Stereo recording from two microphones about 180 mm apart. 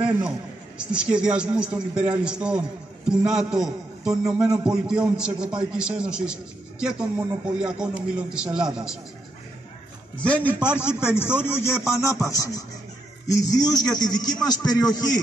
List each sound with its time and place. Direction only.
0.7 s a man's voice: 5° right (ahead or behind)
10.2 s music: 5° left (ahead or behind)
13.3 s speech: 20° left (ahead or behind)